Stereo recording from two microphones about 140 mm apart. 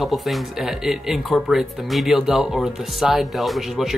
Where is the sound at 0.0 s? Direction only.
Centre (ahead or behind).